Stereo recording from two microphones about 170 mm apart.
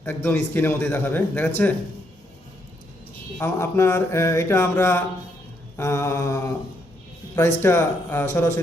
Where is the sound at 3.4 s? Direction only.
15° left (ahead or behind).